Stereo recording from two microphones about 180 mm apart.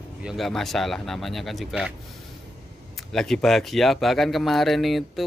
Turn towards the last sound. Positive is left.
turn(degrees=0)  # may be behind; listen again after turning